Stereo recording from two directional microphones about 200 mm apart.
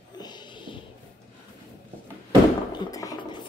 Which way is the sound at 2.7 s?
20° left (ahead or behind).